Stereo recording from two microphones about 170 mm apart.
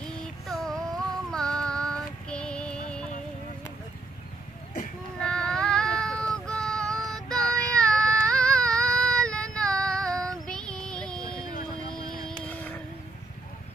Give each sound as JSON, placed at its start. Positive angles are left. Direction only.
{"t": 0.5, "sound": "music", "side_deg": 0}
{"t": 1.3, "sound": "female singing", "side_deg": 5}
{"t": 5.2, "sound": "child singing", "side_deg": 5}
{"t": 12.3, "sound": "vehicle", "side_deg": 5}